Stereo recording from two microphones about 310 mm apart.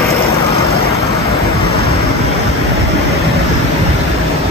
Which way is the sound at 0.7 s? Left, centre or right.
Centre.